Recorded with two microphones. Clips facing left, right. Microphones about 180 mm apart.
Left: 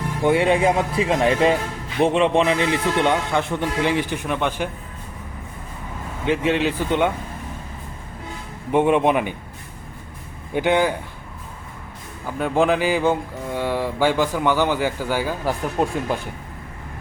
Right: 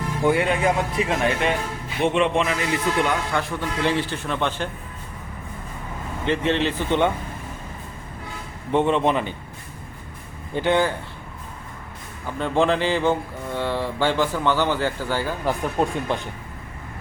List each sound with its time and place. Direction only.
0.2 s a man's voice: 20° left (ahead or behind)
6.2 s speech: 10° left (ahead or behind)
8.7 s speech: 10° left (ahead or behind)
10.5 s speech: 15° left (ahead or behind)
12.4 s speech: 10° left (ahead or behind)